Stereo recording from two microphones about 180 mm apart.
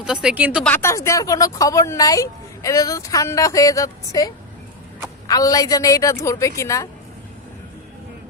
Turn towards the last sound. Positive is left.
turn(degrees=15)  # may be behind; listen again after turning